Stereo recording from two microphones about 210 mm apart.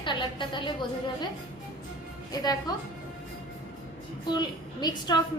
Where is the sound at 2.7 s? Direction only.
20° left (ahead or behind).